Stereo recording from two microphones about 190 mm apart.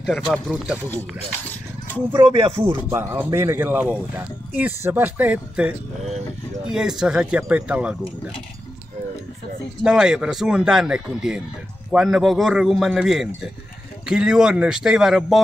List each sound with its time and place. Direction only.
0.0 s a man's voice: centre (ahead or behind)
2.1 s speech: 25° right (ahead or behind)
2.6 s a man's voice: 10° right (ahead or behind)
9.8 s a man's voice: 5° right (ahead or behind)